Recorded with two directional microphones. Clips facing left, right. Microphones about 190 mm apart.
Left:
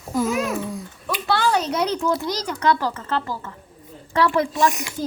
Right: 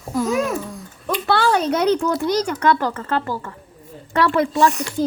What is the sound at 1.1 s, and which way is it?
A woman's voice, 55° right (ahead or behind).